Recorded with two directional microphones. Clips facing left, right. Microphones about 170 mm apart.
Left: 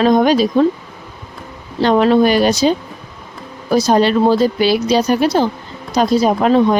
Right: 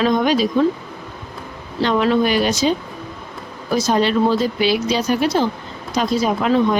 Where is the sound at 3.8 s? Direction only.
35° left (ahead or behind).